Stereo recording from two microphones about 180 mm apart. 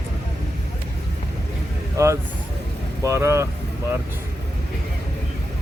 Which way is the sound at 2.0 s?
15° right (ahead or behind).